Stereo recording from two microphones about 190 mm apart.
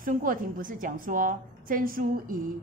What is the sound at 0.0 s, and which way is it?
A woman's voice, 45° right (ahead or behind).